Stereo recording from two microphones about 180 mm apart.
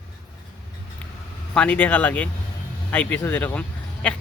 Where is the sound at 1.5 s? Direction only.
5° left (ahead or behind).